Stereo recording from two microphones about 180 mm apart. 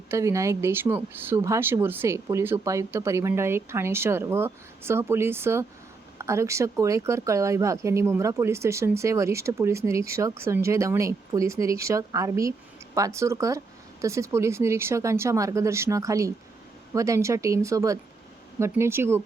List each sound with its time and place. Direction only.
0.1 s speech: 15° right (ahead or behind)